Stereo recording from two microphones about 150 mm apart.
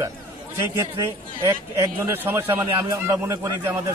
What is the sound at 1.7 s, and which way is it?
A man's voice, 20° right (ahead or behind).